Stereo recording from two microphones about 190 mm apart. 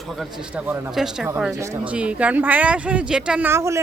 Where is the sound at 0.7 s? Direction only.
5° right (ahead or behind).